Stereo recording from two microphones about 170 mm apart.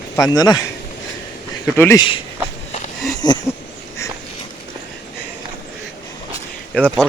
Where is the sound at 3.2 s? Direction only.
25° left (ahead or behind).